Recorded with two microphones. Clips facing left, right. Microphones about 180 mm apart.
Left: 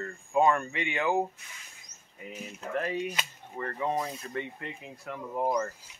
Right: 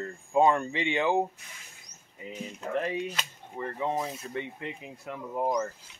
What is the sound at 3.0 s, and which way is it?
Speech, 10° left (ahead or behind).